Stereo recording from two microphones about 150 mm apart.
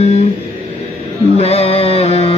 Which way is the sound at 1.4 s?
40° left (ahead or behind).